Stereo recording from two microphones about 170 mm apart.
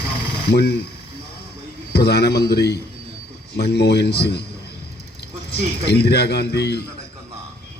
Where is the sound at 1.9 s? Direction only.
75° left (ahead or behind).